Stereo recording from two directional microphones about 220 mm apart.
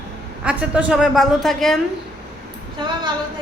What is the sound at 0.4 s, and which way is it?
A man's voice, 5° right (ahead or behind).